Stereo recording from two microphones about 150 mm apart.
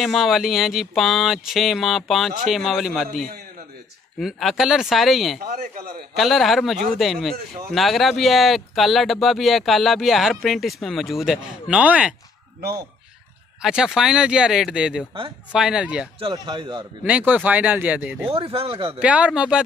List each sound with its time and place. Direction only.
0.0 s speech: centre (ahead or behind)
4.2 s speech: centre (ahead or behind)
5.4 s speech: 75° right (ahead or behind)
6.1 s speech: centre (ahead or behind)
13.6 s speech: 5° right (ahead or behind)
16.2 s speech: 30° right (ahead or behind)
17.0 s speech: 10° right (ahead or behind)
18.3 s speech: 40° right (ahead or behind)
18.9 s speech: 10° right (ahead or behind)